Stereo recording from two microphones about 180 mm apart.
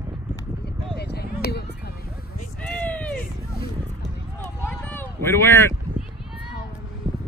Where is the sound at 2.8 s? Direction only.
5° left (ahead or behind).